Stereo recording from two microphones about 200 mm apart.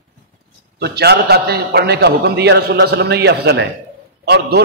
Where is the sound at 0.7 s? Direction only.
55° right (ahead or behind).